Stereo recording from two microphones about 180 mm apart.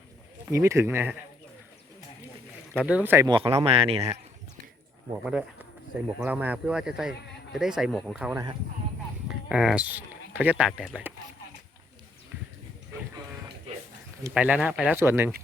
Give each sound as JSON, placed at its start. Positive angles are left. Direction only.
{"t": 0.5, "sound": "speech", "side_deg": -15}
{"t": 2.7, "sound": "speech", "side_deg": -5}
{"t": 3.2, "sound": "speech", "side_deg": -25}
{"t": 5.2, "sound": "speech", "side_deg": -5}
{"t": 14.3, "sound": "speech", "side_deg": -10}